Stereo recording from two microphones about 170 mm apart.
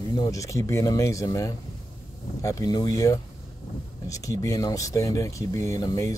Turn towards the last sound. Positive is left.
turn(degrees=20)  # may be behind; listen again after turning